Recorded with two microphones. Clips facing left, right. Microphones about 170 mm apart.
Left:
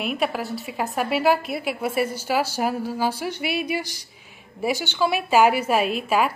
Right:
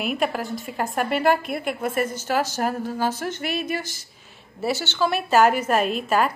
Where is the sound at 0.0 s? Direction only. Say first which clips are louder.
Even; centre (ahead or behind).